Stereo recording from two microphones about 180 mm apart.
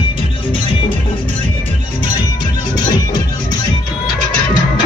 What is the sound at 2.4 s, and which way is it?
Music, 25° left (ahead or behind).